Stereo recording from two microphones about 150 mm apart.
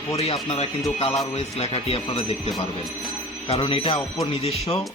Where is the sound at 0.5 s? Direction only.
45° left (ahead or behind).